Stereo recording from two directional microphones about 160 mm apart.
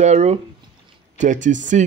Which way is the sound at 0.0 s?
45° right (ahead or behind).